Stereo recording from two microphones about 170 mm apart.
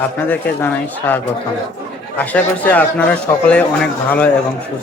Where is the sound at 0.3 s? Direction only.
10° left (ahead or behind).